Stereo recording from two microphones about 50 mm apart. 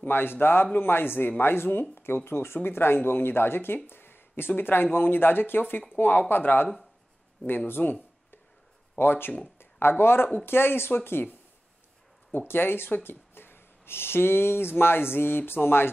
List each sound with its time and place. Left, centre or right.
0.0 s speech: left